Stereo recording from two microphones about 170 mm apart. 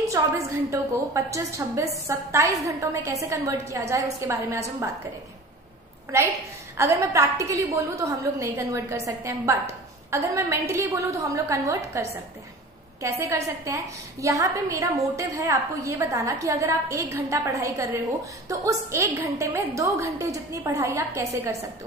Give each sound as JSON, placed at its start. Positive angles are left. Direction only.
{"t": 0.2, "sound": "a woman's voice", "side_deg": -20}
{"t": 6.8, "sound": "a woman's voice", "side_deg": -20}
{"t": 13.7, "sound": "a woman's voice", "side_deg": -20}